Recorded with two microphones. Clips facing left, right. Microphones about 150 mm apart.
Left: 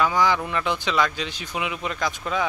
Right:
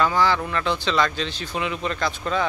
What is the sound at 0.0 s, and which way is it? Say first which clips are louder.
Speech: right 1 dB; 15° left (ahead or behind).